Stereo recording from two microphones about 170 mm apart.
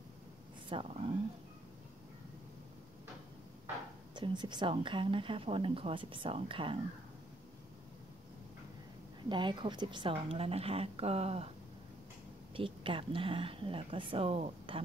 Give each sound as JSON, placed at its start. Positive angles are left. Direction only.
{"t": 0.7, "sound": "a woman's voice", "side_deg": -35}
{"t": 4.1, "sound": "a woman's voice", "side_deg": -25}
{"t": 9.3, "sound": "a woman's voice", "side_deg": -25}
{"t": 12.5, "sound": "a woman's voice", "side_deg": -30}